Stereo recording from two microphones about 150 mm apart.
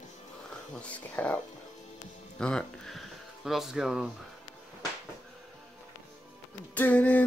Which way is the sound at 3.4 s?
Centre (ahead or behind).